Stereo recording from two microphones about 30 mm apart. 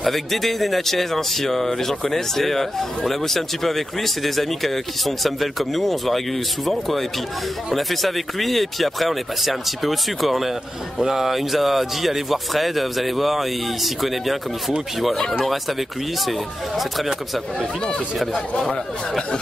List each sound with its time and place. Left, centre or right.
0.0 s speech: centre
16.3 s speech: centre
17.6 s speech: left